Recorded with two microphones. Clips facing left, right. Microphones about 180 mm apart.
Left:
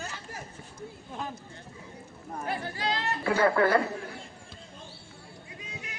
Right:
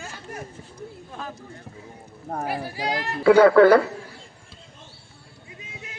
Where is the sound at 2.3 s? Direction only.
75° right (ahead or behind).